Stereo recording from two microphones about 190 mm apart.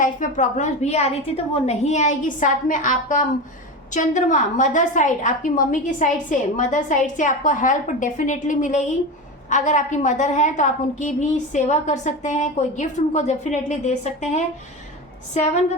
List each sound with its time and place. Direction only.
0.0 s a woman's voice: 40° left (ahead or behind)